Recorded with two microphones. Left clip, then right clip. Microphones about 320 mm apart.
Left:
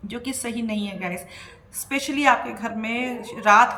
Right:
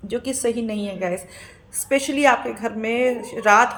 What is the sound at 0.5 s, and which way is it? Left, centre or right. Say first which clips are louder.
Speech: right 2 dB; centre.